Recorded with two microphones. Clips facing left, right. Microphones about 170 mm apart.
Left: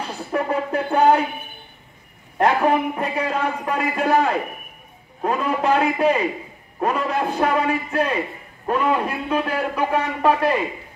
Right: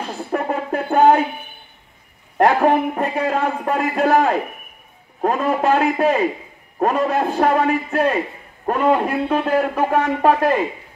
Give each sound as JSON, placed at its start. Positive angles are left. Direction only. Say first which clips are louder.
{"t": 0.3, "sound": "a sound", "louder": "even", "side_deg": -50}
{"t": 2.3, "sound": "a man's voice", "louder": "right 3 dB", "side_deg": -45}
{"t": 5.2, "sound": "a man's voice", "louder": "right 3 dB", "side_deg": -45}